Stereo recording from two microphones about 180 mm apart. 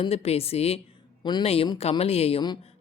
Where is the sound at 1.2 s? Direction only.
25° left (ahead or behind).